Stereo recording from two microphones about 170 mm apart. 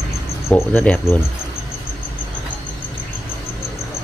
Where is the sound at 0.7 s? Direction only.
10° left (ahead or behind).